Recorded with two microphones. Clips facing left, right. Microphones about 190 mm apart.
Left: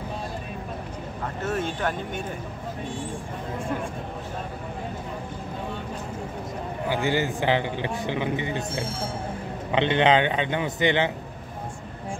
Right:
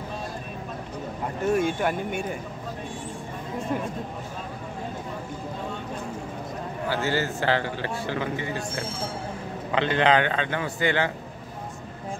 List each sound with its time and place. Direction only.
1.2 s speech: 10° right (ahead or behind)
6.9 s a man's voice: 15° left (ahead or behind)